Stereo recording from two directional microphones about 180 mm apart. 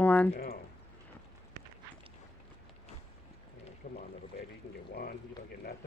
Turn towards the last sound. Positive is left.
turn(degrees=45)  # may be behind; listen again after turning